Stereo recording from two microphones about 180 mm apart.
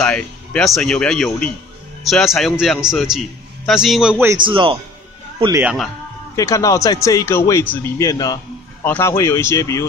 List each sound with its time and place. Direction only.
0.0 s speech: 5° left (ahead or behind); by 4.4 s 10° right (ahead or behind)
4.5 s a man's voice: 30° right (ahead or behind)
5.6 s speech: 5° right (ahead or behind)
6.3 s speech: 20° left (ahead or behind)